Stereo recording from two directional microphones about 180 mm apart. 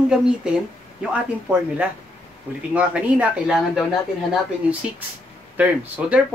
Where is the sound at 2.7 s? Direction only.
5° right (ahead or behind).